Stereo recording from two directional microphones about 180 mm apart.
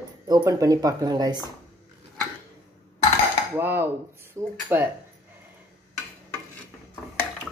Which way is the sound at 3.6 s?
10° right (ahead or behind).